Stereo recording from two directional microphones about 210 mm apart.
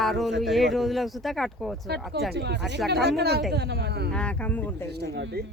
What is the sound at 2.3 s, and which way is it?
Speech, 55° right (ahead or behind).